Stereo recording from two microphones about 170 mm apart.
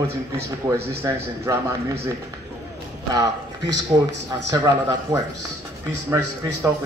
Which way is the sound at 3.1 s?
20° right (ahead or behind).